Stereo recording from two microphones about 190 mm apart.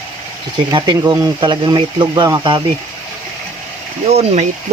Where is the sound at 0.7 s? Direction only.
20° right (ahead or behind).